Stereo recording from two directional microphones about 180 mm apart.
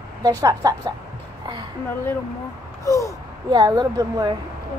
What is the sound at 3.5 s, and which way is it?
Speech, 20° right (ahead or behind).